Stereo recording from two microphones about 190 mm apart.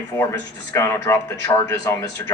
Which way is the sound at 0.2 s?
15° left (ahead or behind).